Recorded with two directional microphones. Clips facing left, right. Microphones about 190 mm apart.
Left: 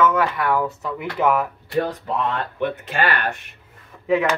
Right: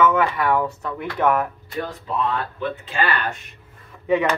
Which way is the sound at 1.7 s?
65° left (ahead or behind).